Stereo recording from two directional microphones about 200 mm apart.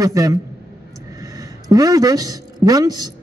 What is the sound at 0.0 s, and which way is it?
A man's voice, 15° right (ahead or behind).